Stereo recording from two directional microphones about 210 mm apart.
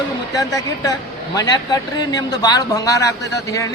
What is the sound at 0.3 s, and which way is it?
Speech, 15° left (ahead or behind).